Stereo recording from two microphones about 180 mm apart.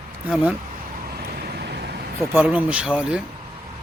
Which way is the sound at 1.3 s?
60° right (ahead or behind).